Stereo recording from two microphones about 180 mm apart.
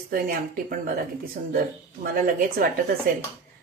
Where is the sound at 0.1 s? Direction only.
50° right (ahead or behind).